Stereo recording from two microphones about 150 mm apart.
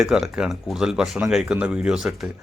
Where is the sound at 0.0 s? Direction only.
5° right (ahead or behind).